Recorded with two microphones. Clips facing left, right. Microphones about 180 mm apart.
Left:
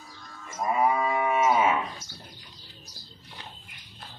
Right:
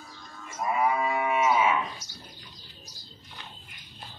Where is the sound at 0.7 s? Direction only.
35° left (ahead or behind).